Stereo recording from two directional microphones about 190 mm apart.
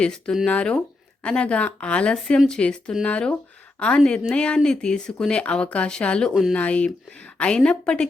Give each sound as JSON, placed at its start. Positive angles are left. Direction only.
{"t": 0.0, "sound": "speech", "side_deg": 5}